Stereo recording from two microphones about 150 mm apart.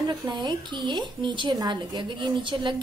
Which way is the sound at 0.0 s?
25° right (ahead or behind).